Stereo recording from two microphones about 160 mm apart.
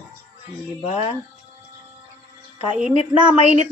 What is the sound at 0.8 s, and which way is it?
Speech, 40° left (ahead or behind).